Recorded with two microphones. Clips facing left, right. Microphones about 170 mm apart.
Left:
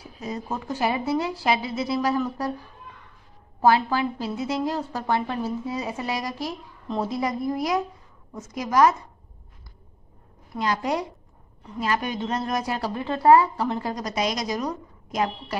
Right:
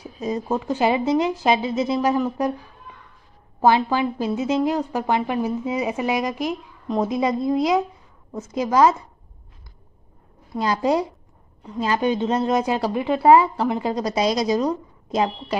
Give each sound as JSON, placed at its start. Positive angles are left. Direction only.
{"t": 0.2, "sound": "a woman's voice", "side_deg": -20}
{"t": 3.6, "sound": "a woman's voice", "side_deg": -15}
{"t": 10.5, "sound": "a woman's voice", "side_deg": -30}
{"t": 13.9, "sound": "a woman's voice", "side_deg": -30}